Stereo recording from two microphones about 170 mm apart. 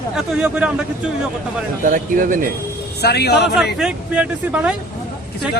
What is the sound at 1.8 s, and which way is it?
Speech, 50° right (ahead or behind).